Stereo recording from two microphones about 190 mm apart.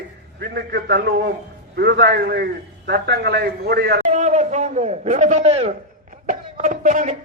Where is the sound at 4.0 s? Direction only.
40° right (ahead or behind).